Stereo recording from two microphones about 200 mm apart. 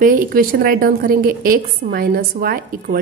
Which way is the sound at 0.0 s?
45° right (ahead or behind).